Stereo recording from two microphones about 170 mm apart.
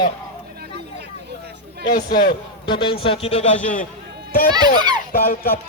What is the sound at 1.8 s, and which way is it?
Speech, 60° left (ahead or behind).